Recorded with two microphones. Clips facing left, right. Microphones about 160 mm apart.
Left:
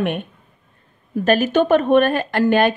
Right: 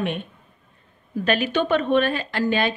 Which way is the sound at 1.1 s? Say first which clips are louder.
Left 6 dB; 45° left (ahead or behind).